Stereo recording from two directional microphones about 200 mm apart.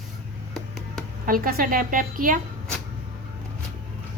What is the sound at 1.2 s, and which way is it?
A woman's voice, 45° right (ahead or behind).